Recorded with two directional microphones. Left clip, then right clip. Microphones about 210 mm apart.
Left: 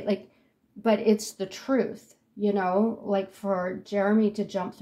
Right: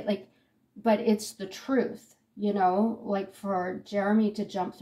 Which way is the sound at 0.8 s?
30° left (ahead or behind).